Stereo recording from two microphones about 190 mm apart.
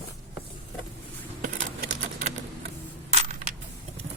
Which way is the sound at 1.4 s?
40° right (ahead or behind).